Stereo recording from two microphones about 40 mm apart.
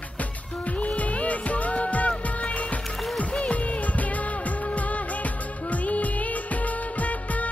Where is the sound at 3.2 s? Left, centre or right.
Left.